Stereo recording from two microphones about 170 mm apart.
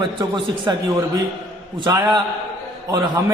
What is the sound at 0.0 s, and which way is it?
Speech, 25° right (ahead or behind).